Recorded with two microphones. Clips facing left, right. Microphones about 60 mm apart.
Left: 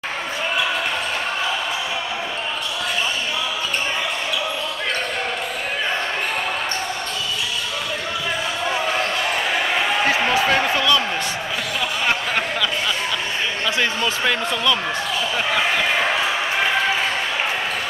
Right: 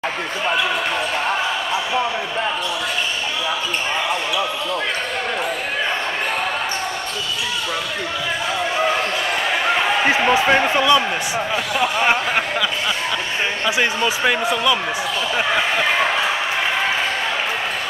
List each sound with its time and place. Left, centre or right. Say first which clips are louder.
10.0 s speech: right 4 dB; right
13.7 s speech: right 3 dB; centre